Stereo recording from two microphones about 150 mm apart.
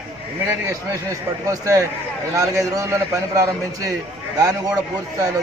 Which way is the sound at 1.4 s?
20° right (ahead or behind).